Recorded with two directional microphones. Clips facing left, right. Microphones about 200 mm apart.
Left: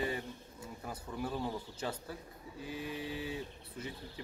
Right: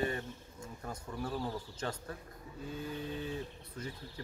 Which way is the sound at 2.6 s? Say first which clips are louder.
Even; 80° left.